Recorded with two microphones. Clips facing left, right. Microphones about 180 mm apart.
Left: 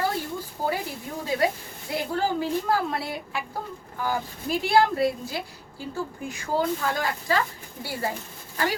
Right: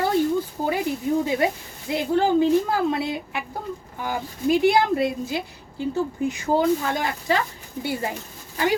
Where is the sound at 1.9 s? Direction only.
20° right (ahead or behind).